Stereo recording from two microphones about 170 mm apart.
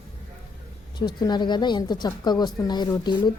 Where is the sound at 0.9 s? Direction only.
25° left (ahead or behind).